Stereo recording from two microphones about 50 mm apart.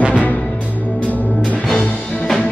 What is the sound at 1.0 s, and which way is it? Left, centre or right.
Music, left.